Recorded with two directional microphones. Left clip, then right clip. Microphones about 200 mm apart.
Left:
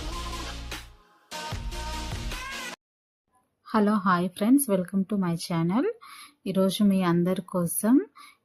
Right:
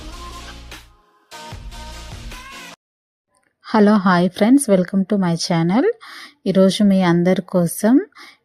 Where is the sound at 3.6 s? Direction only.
35° right (ahead or behind).